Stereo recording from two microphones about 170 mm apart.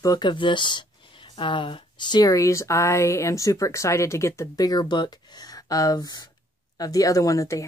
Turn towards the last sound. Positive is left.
turn(degrees=20)  # may be behind; listen again after turning